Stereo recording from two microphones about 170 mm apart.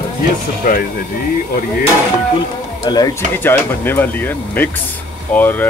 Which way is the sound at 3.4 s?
10° left (ahead or behind).